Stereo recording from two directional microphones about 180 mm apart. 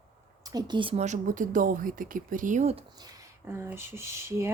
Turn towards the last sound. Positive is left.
turn(degrees=-15)  # may be behind; listen again after turning